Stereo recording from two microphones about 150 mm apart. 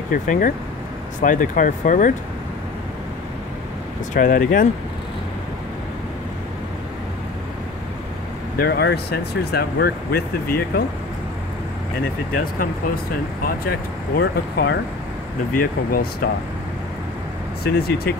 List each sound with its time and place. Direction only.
0.1 s speech: 65° left (ahead or behind)
4.1 s speech: 60° left (ahead or behind)
8.5 s speech: 90° left
13.4 s speech: 90° left
15.5 s speech: 80° left
17.6 s speech: 90° left